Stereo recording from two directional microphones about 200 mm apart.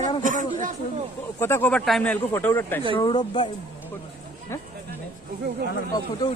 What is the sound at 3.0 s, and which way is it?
Speech, 25° left (ahead or behind).